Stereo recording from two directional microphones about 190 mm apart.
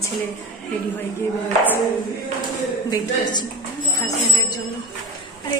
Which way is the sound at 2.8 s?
20° left (ahead or behind).